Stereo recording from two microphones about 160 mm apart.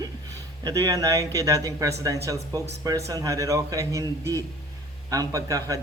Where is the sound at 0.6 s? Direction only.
20° right (ahead or behind).